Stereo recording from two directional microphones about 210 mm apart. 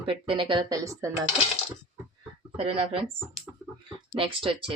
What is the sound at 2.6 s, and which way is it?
Speech, 25° right (ahead or behind).